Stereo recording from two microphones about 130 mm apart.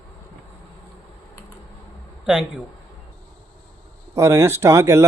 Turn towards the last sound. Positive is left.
turn(degrees=-20)  # may be behind; listen again after turning